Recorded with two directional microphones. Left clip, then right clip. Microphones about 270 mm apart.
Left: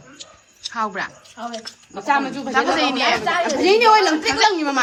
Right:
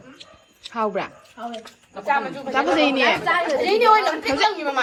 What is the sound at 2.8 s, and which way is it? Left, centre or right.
Speech, centre.